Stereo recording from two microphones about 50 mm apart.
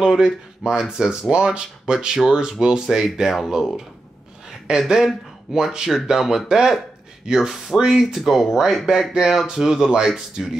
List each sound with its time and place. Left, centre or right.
0.0 s speech: centre
4.6 s speech: centre